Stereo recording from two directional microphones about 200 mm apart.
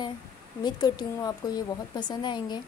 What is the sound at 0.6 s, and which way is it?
Speech, 20° left (ahead or behind).